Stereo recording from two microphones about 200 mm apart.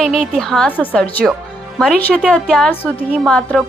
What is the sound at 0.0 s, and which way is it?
A woman's voice, centre (ahead or behind).